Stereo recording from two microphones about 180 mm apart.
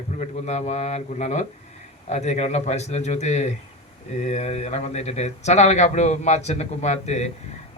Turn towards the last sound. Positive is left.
turn(degrees=40)  # may be behind; listen again after turning